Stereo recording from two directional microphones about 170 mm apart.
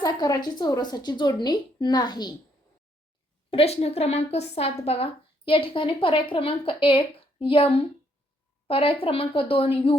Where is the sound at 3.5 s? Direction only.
35° left (ahead or behind).